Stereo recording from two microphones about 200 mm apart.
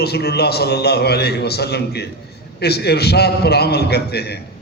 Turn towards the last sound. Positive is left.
turn(degrees=55)  # may be behind; listen again after turning